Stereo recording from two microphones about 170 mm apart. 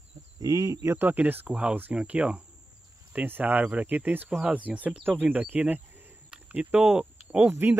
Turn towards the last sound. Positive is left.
turn(degrees=-10)  # may be behind; listen again after turning